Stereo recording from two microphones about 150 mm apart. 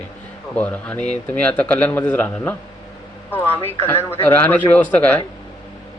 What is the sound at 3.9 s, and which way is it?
Speech, 15° left (ahead or behind).